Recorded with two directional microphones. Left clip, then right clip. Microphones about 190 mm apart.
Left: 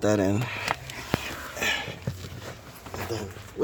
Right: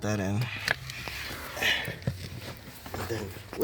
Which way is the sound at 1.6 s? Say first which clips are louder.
Even; 20° left (ahead or behind).